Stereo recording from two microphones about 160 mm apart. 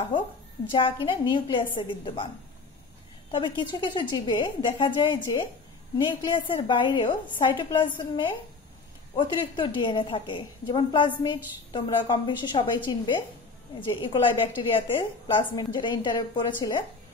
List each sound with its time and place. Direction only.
0.7 s a woman's voice: 30° left (ahead or behind)
9.1 s a woman's voice: 30° left (ahead or behind)